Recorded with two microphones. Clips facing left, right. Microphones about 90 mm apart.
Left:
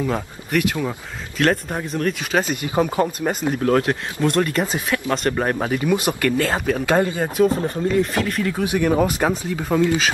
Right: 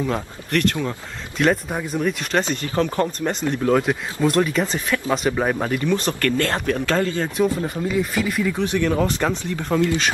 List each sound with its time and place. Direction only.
0.0 s speech: 5° left (ahead or behind)
2.5 s speech: 10° left (ahead or behind)
7.0 s speech: 15° left (ahead or behind)
7.6 s speech: 5° right (ahead or behind)
8.6 s speech: 10° left (ahead or behind)